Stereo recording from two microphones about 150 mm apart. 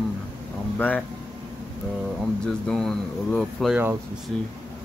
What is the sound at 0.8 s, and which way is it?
Speech, 10° left (ahead or behind).